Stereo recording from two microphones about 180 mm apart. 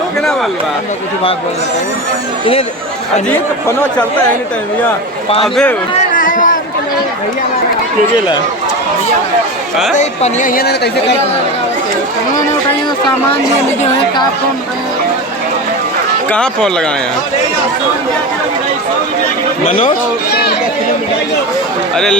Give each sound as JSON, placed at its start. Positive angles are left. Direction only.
{"t": 6.0, "sound": "a sound", "side_deg": 45}
{"t": 9.9, "sound": "speech", "side_deg": 40}
{"t": 16.3, "sound": "speech", "side_deg": 5}
{"t": 19.6, "sound": "speech", "side_deg": 50}